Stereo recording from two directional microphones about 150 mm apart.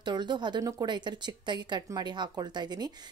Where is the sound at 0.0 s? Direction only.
30° right (ahead or behind).